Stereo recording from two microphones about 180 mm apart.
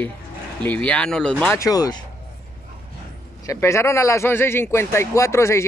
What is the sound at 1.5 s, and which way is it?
Speech, 20° left (ahead or behind).